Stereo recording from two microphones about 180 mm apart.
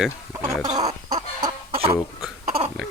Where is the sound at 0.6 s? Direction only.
20° right (ahead or behind).